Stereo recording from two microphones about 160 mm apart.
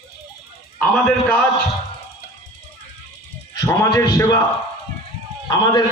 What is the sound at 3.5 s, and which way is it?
Speech, 20° left (ahead or behind).